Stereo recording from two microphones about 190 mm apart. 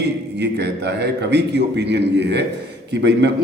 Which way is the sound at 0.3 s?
60° right (ahead or behind).